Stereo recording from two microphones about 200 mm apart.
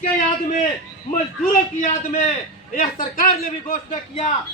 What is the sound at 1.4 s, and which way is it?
A man's voice, 40° left (ahead or behind).